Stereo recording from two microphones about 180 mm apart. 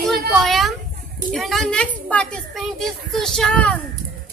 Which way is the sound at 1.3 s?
Centre (ahead or behind).